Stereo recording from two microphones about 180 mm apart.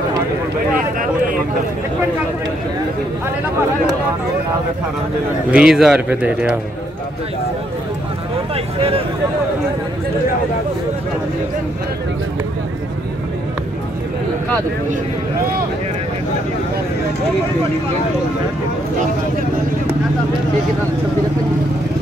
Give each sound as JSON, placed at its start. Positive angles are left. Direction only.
{"t": 5.5, "sound": "speech", "side_deg": -5}